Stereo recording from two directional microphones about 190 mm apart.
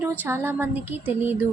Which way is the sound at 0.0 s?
15° right (ahead or behind).